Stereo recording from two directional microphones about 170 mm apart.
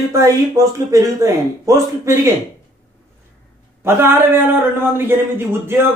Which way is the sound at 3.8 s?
15° right (ahead or behind).